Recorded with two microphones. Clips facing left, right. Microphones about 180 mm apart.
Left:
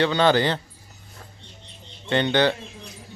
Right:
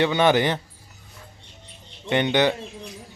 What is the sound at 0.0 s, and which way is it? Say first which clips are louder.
Speech: even; 20° right (ahead or behind).